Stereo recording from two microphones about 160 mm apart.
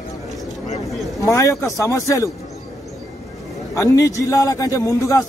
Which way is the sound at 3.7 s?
20° left (ahead or behind).